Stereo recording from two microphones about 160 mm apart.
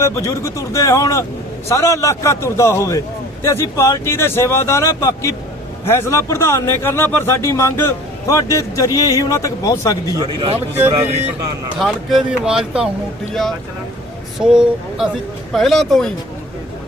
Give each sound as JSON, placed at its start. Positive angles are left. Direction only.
{"t": 0.0, "sound": "a man's voice", "side_deg": 20}
{"t": 10.2, "sound": "a man's voice", "side_deg": -30}
{"t": 11.8, "sound": "speech", "side_deg": 0}
{"t": 14.3, "sound": "speech", "side_deg": -5}